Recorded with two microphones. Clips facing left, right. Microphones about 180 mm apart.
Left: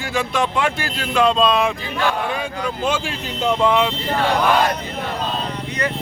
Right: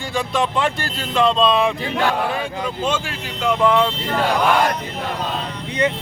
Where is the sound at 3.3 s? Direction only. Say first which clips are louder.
Right 1 dB; 20° left (ahead or behind).